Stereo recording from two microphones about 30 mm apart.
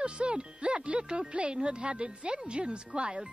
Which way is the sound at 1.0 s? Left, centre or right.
Right.